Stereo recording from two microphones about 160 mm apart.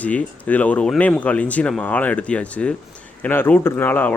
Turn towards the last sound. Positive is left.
turn(degrees=10)  # may be behind; listen again after turning